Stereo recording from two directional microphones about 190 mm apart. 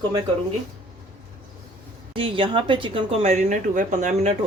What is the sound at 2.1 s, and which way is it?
Speech, 25° right (ahead or behind).